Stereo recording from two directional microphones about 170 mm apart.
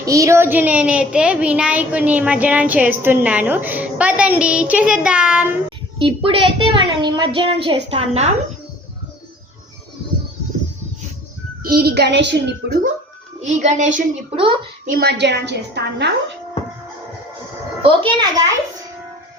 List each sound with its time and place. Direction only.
0.0 s speech: 20° right (ahead or behind)
6.0 s a woman's voice: 30° right (ahead or behind)
11.6 s a child's voice: 65° right (ahead or behind)
13.4 s speech: 45° right (ahead or behind)
14.3 s a woman's voice: 30° right (ahead or behind)
14.8 s a child's voice: 65° right (ahead or behind); by 16.1 s 80° right
17.8 s a child's voice: 30° right (ahead or behind)